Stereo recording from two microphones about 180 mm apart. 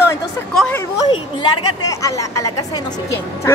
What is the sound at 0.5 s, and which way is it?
Speech, 5° left (ahead or behind).